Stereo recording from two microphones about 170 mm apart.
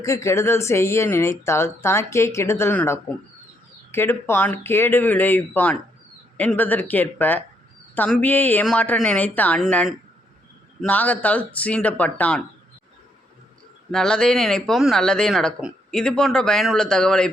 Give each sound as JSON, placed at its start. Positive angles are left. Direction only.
{"t": 0.0, "sound": "speech", "side_deg": 15}
{"t": 13.9, "sound": "speech", "side_deg": 5}